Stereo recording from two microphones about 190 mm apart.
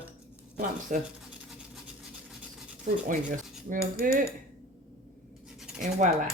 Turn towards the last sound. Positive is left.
turn(degrees=-40)  # may be behind; listen again after turning